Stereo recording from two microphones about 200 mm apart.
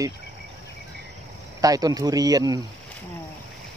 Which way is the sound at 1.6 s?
20° right (ahead or behind).